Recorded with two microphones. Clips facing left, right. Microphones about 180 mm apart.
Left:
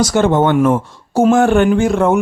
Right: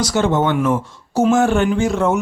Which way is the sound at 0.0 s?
55° left (ahead or behind).